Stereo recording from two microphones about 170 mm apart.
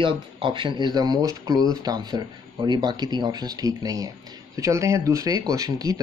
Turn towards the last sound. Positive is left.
turn(degrees=-20)  # may be behind; listen again after turning